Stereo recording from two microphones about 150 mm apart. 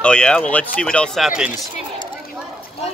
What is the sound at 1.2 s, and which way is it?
Speech, 5° right (ahead or behind).